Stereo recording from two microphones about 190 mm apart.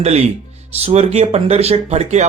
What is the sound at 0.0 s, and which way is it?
Speech, 35° right (ahead or behind).